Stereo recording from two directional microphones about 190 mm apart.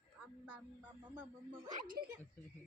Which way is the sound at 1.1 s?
10° right (ahead or behind).